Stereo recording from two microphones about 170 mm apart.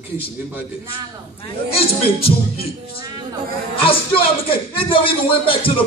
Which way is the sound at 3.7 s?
30° left (ahead or behind).